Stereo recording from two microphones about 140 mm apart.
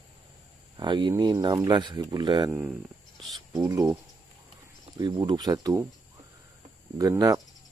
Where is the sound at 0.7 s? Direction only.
35° right (ahead or behind).